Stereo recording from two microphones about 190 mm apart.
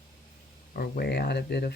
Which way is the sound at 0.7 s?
55° left (ahead or behind).